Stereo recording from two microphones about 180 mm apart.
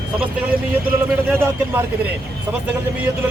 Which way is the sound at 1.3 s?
10° right (ahead or behind).